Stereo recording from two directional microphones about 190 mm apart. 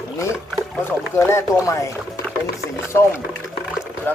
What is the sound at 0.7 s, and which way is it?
Speech, 10° left (ahead or behind).